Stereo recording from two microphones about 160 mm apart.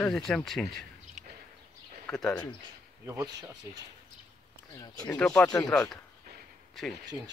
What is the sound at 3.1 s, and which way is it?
Speech, 20° right (ahead or behind).